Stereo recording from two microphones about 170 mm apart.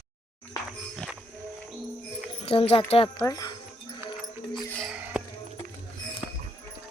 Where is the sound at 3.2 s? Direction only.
20° left (ahead or behind).